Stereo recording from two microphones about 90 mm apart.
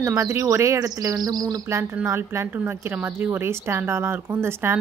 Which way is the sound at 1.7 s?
30° right (ahead or behind).